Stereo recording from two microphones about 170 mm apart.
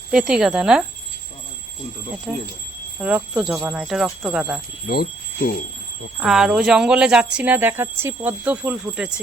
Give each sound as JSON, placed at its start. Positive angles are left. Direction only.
{"t": 0.1, "sound": "speech", "side_deg": -5}
{"t": 2.3, "sound": "speech", "side_deg": 0}
{"t": 4.9, "sound": "speech", "side_deg": 60}
{"t": 6.1, "sound": "speech", "side_deg": -5}